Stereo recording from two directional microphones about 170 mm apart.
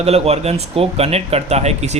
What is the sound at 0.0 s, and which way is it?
Speech, 40° right (ahead or behind).